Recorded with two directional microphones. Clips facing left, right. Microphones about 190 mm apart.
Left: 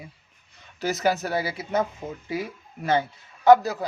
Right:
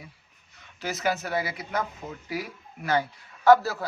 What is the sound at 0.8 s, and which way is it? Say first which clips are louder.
Speech: left 4 dB; 40° left (ahead or behind).